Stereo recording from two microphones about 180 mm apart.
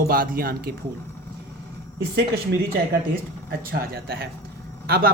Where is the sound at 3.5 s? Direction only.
60° right (ahead or behind).